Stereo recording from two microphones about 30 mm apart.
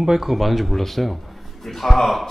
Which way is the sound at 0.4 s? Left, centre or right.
Centre.